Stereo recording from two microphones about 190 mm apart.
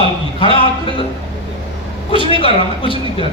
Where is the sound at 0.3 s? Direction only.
30° left (ahead or behind).